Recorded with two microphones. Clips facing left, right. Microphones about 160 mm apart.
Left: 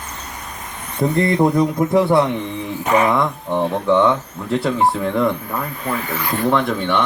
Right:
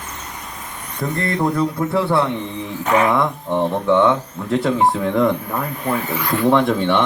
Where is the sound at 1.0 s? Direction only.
20° left (ahead or behind).